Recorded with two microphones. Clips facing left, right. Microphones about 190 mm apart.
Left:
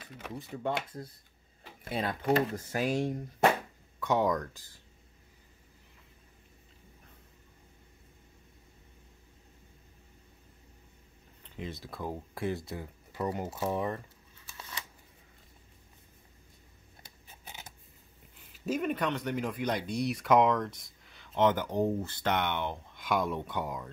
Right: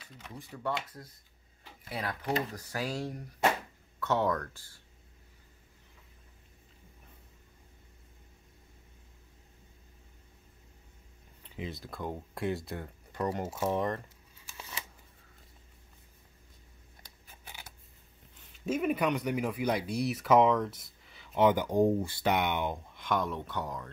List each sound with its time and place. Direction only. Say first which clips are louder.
0.0 s speech: left 5 dB; 55° left (ahead or behind)
1.9 s speech: left 5 dB; 25° left (ahead or behind)
11.5 s speech: even; centre (ahead or behind)
13.5 s speech: right 1 dB; 5° right (ahead or behind)
13.7 s speech: right 1 dB; 5° left (ahead or behind)
18.5 s speech: right 1 dB; 5° right (ahead or behind)
22.9 s speech: left 2 dB; 10° left (ahead or behind)